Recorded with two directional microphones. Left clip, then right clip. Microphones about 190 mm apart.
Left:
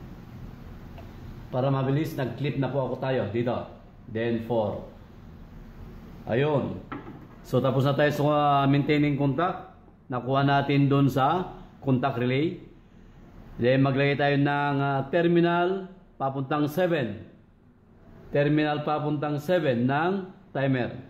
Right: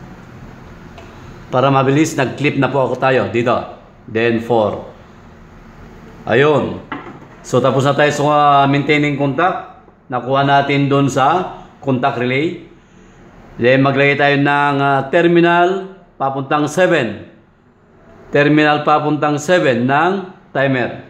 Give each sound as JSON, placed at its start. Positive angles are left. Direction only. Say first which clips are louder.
{"t": 1.5, "sound": "a man's voice", "louder": "right 14 dB", "side_deg": -40}
{"t": 6.2, "sound": "a man's voice", "louder": "right 14 dB", "side_deg": -30}
{"t": 7.5, "sound": "a man's voice", "louder": "right 11 dB", "side_deg": -5}
{"t": 13.6, "sound": "a man's voice", "louder": "right 11 dB", "side_deg": -10}
{"t": 18.3, "sound": "a man's voice", "louder": "right 13 dB", "side_deg": -20}